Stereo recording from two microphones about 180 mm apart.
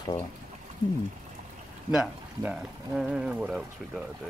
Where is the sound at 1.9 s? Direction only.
5° right (ahead or behind).